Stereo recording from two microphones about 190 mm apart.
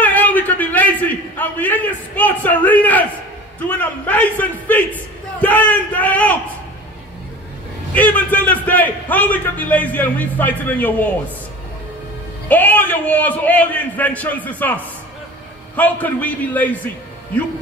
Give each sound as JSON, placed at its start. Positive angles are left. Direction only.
{"t": 0.0, "sound": "a sound", "side_deg": 10}
{"t": 1.4, "sound": "a man's voice", "side_deg": 10}
{"t": 7.9, "sound": "a man's voice", "side_deg": 10}
{"t": 12.4, "sound": "a man's voice", "side_deg": 10}